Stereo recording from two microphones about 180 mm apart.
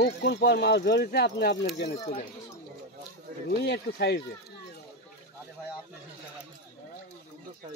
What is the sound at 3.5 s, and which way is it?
Speech, 65° left (ahead or behind).